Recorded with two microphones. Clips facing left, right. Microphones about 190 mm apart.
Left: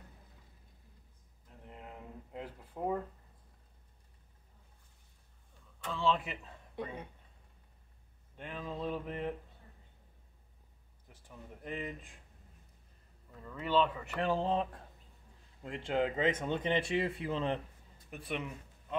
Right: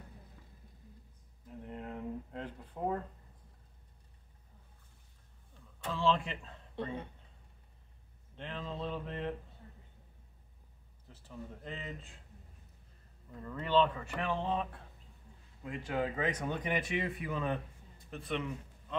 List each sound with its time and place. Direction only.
1.7 s a sound: centre (ahead or behind)
5.9 s speech: centre (ahead or behind)
8.4 s speech: 10° left (ahead or behind)
11.1 s speech: 15° left (ahead or behind)
13.4 s speech: 5° left (ahead or behind)
14.0 s speech: 35° left (ahead or behind)
18.1 s speech: 10° left (ahead or behind)